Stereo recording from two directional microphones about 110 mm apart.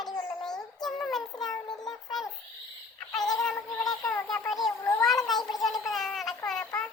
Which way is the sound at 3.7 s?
35° left (ahead or behind).